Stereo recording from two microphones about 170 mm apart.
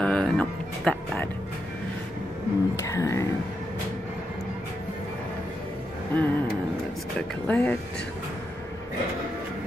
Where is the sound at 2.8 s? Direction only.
20° left (ahead or behind).